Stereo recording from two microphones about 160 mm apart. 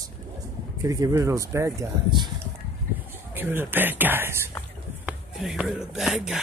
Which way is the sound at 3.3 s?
15° right (ahead or behind).